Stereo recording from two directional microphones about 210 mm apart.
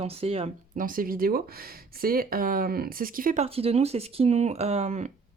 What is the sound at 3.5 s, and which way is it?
Speech, 30° right (ahead or behind).